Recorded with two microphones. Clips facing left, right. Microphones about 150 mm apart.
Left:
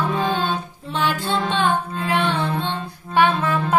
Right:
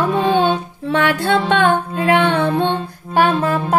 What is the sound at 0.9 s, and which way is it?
Music, 65° right (ahead or behind).